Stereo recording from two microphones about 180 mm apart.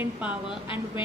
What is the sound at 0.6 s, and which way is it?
Speech, 25° left (ahead or behind).